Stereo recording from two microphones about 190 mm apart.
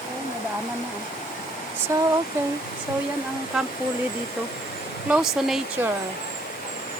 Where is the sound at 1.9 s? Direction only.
15° right (ahead or behind).